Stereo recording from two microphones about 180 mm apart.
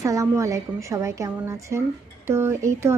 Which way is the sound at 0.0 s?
15° right (ahead or behind).